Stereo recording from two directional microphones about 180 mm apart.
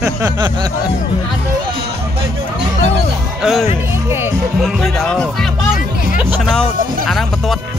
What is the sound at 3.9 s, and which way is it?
Music, 15° right (ahead or behind).